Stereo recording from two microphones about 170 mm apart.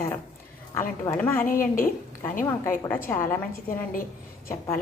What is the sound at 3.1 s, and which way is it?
Speech, 15° left (ahead or behind).